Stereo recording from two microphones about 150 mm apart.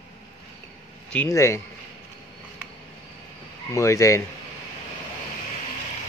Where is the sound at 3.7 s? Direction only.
20° left (ahead or behind).